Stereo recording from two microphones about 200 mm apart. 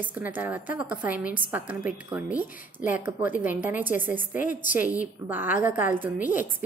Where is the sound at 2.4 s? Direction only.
45° left (ahead or behind).